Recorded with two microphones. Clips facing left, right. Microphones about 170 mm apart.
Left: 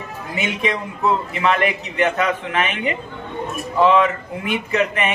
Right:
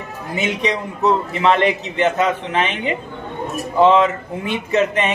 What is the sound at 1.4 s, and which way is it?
Speech, 25° right (ahead or behind).